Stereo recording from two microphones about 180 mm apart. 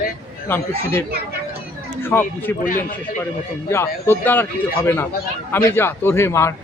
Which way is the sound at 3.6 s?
15° left (ahead or behind).